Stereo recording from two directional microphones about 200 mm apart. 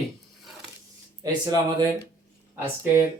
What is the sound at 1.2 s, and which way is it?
Speech, 20° right (ahead or behind).